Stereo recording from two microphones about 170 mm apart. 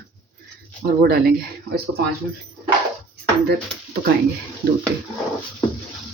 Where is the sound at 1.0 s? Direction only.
65° right (ahead or behind).